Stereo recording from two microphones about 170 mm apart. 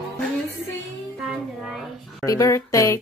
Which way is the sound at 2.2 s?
20° left (ahead or behind).